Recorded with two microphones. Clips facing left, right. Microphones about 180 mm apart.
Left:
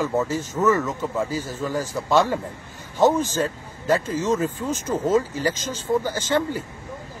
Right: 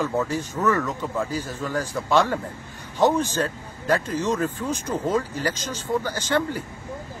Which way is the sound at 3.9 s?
20° left (ahead or behind).